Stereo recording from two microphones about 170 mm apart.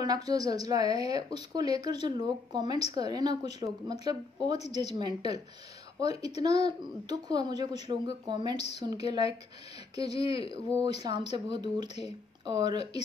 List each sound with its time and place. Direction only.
0.0 s speech: 20° right (ahead or behind)
10.5 s speech: 25° right (ahead or behind)